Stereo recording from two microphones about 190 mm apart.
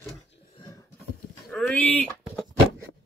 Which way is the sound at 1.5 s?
Centre (ahead or behind).